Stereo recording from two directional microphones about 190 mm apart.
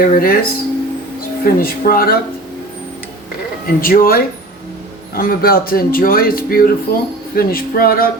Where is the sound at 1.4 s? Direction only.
50° left (ahead or behind).